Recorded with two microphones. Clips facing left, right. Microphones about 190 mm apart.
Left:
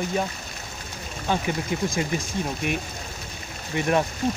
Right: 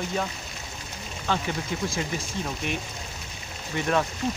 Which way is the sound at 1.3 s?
15° left (ahead or behind).